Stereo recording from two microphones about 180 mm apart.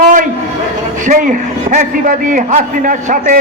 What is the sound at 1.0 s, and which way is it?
A man's voice, 45° right (ahead or behind).